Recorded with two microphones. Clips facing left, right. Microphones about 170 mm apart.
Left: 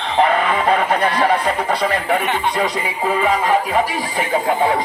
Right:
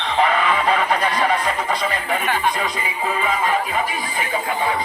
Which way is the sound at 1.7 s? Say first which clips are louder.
Left 4 dB; 65° left (ahead or behind).